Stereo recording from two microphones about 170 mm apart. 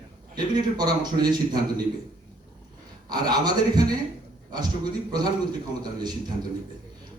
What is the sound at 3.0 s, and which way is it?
Speech, 25° right (ahead or behind).